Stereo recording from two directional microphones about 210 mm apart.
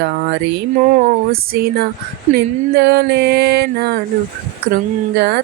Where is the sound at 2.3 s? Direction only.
50° right (ahead or behind).